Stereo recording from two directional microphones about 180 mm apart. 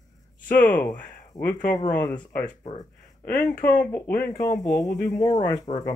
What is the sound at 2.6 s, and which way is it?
Speech, 35° left (ahead or behind).